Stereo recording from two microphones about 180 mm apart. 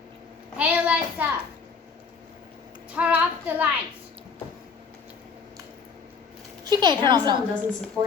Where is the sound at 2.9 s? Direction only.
5° right (ahead or behind).